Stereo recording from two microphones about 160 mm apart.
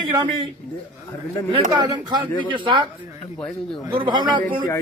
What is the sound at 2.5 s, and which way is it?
Speech, 30° right (ahead or behind).